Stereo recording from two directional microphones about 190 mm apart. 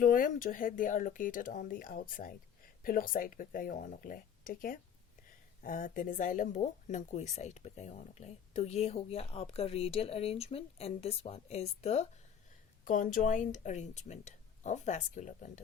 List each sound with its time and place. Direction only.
0.0 s speech: 45° left (ahead or behind)